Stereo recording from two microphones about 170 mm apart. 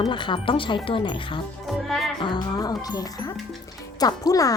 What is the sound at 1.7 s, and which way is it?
Music, centre (ahead or behind).